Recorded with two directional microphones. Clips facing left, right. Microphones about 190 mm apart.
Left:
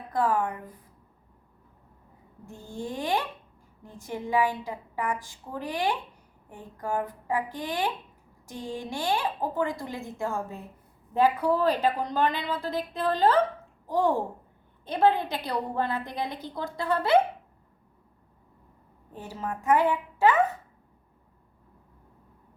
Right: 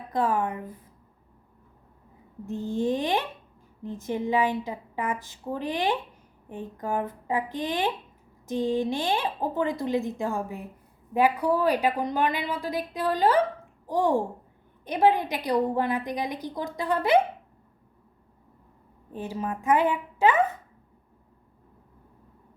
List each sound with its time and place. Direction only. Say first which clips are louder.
0.1 s speech: even; 20° right (ahead or behind)
2.5 s a woman's voice: right 10 dB; 20° right (ahead or behind)
19.1 s a woman's voice: right 4 dB; 15° right (ahead or behind)